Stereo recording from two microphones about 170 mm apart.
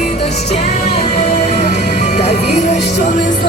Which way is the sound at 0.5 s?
40° left (ahead or behind).